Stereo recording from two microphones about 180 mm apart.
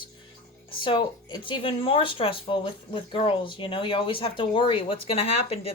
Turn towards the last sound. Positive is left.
turn(degrees=35)  # may be behind; listen again after turning